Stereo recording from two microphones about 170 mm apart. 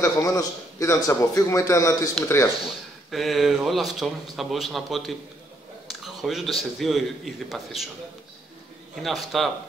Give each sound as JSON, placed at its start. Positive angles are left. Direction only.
{"t": 0.0, "sound": "a man's voice", "side_deg": 20}
{"t": 3.1, "sound": "a man's voice", "side_deg": 0}
{"t": 9.0, "sound": "a man's voice", "side_deg": 0}